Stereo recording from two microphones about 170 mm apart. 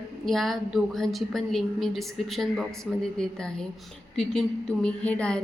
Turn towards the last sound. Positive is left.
turn(degrees=5)  # may be behind; listen again after turning